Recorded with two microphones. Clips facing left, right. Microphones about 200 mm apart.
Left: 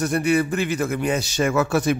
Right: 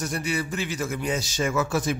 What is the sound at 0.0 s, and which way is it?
A man's voice, 60° left (ahead or behind).